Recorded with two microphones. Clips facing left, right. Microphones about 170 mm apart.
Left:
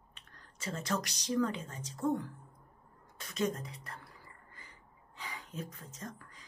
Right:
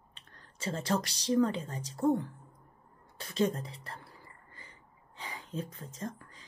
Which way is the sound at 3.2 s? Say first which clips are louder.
Right 4 dB; 30° right (ahead or behind).